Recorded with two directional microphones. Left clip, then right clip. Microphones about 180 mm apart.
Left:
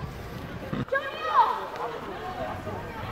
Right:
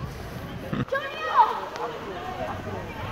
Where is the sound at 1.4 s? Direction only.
50° right (ahead or behind).